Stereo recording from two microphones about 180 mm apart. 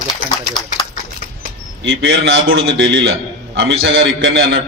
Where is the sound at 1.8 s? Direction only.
90° right.